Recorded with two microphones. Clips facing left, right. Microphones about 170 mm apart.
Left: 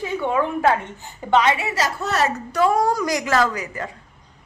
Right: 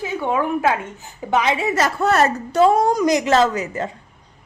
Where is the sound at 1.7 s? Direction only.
55° right (ahead or behind).